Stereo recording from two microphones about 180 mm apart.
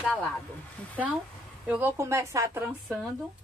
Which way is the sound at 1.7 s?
10° right (ahead or behind).